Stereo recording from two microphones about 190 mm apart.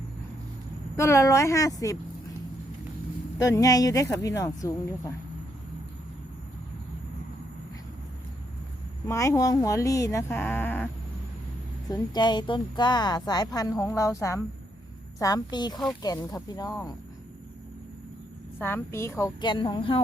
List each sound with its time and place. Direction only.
0.9 s speech: 15° left (ahead or behind)
3.3 s speech: 20° left (ahead or behind)
9.0 s speech: 15° left (ahead or behind)
11.9 s speech: 20° left (ahead or behind)
18.6 s speech: 10° left (ahead or behind); by 20.0 s 30° left (ahead or behind)